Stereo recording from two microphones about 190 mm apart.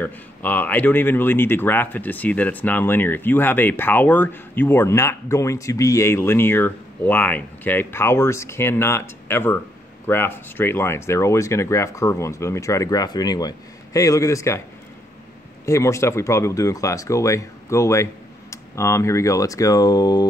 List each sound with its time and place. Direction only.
0.0 s speech: 10° left (ahead or behind)
15.6 s speech: 15° left (ahead or behind)